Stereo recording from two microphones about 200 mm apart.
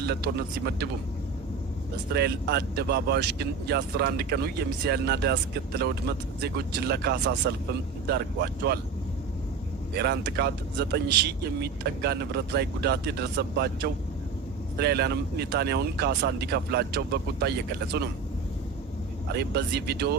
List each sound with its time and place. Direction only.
0.0 s speech: 55° right (ahead or behind)
2.1 s speech: 55° right (ahead or behind)
10.0 s speech: 55° right (ahead or behind)
19.3 s speech: 55° right (ahead or behind)